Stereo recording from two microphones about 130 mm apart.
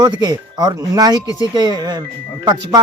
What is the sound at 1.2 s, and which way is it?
Speech, 30° left (ahead or behind).